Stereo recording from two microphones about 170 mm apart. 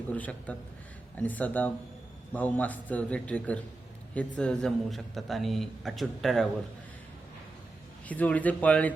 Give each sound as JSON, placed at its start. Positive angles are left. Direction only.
{"t": 0.1, "sound": "a man's voice", "side_deg": 10}
{"t": 8.0, "sound": "a man's voice", "side_deg": 10}